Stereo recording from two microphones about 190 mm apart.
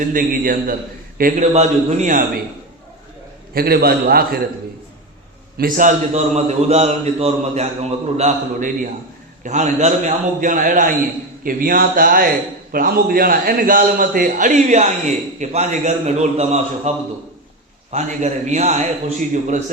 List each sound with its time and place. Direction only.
0.0 s a man's voice: 45° right (ahead or behind)
1.2 s a man's voice: 35° right (ahead or behind)
3.5 s a man's voice: 55° right (ahead or behind)
5.5 s a man's voice: 45° right (ahead or behind)
17.9 s a man's voice: 35° right (ahead or behind)